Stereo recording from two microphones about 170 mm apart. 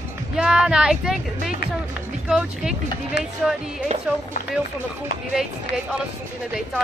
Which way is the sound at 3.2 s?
80° left.